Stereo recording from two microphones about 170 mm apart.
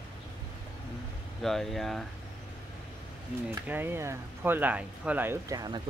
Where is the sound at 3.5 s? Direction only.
10° right (ahead or behind).